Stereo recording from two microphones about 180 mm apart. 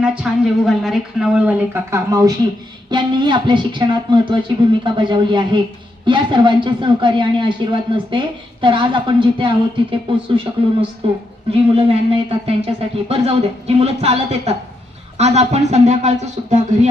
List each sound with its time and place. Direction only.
0.0 s a woman's voice: 5° right (ahead or behind); by 16.6 s 40° right (ahead or behind)